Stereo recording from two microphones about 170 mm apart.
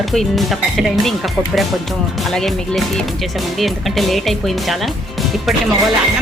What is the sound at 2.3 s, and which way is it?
Speech, centre (ahead or behind).